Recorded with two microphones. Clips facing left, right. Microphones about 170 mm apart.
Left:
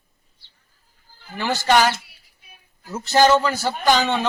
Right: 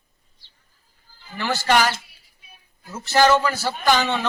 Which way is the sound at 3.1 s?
20° left (ahead or behind).